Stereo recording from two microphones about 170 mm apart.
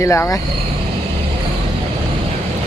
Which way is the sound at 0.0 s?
15° left (ahead or behind).